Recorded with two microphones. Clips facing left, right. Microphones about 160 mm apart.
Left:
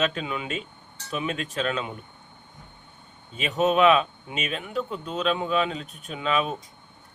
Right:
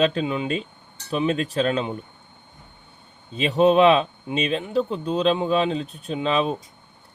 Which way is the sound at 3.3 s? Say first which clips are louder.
Right 5 dB; 30° right (ahead or behind).